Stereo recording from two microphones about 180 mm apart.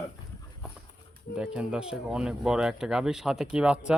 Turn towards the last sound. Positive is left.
turn(degrees=-5)  # may be behind; listen again after turning